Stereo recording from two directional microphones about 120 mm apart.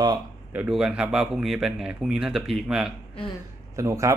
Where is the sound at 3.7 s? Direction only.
25° right (ahead or behind).